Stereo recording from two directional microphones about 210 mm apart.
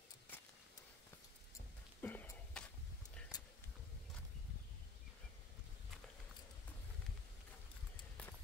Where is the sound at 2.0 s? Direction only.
10° left (ahead or behind).